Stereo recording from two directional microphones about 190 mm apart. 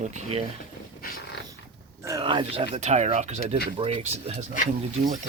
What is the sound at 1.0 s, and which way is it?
Dog, 50° left (ahead or behind).